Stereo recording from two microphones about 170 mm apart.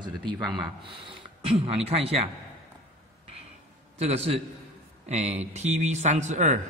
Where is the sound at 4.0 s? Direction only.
35° right (ahead or behind).